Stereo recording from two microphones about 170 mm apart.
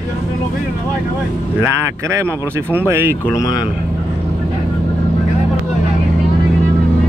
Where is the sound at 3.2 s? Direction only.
20° left (ahead or behind).